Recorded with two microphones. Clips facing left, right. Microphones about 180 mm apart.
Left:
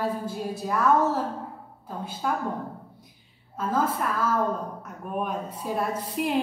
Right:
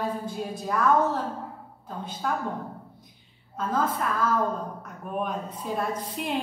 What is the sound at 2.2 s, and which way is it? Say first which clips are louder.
Speech: left 1 dB; 5° left (ahead or behind).